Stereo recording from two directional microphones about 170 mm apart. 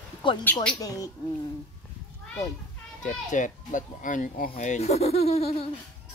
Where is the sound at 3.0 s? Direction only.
50° left (ahead or behind).